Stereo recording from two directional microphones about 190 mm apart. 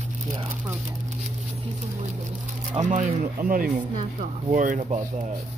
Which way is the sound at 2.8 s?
40° right (ahead or behind).